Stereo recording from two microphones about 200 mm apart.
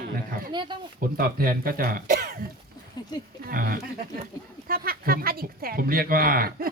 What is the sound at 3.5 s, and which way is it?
Speech, 45° right (ahead or behind).